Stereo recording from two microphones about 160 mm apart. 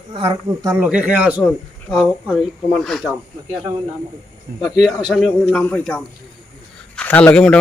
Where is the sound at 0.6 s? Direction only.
10° right (ahead or behind).